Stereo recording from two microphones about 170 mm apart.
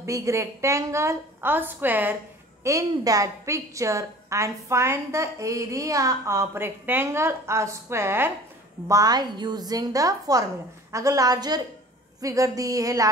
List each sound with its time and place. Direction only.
0.0 s a woman's voice: 20° right (ahead or behind)